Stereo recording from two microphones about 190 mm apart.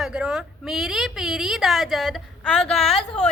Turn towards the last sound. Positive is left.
turn(degrees=30)  # may be behind; listen again after turning